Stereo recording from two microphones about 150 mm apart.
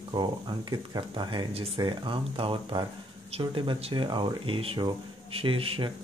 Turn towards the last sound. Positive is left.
turn(degrees=-35)  # may be behind; listen again after turning